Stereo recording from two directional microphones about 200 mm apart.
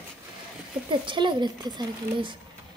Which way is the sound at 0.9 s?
25° right (ahead or behind).